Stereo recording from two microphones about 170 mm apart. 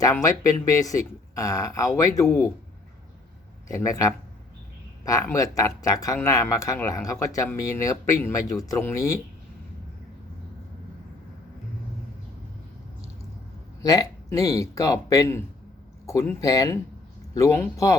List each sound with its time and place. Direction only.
0.0 s speech: 20° left (ahead or behind)
3.7 s speech: 20° left (ahead or behind)
13.8 s speech: 20° left (ahead or behind)